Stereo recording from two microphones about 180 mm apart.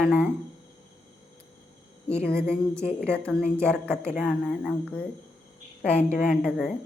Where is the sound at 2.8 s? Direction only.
5° left (ahead or behind).